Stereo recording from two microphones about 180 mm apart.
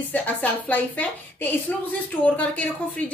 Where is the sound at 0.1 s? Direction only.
10° left (ahead or behind).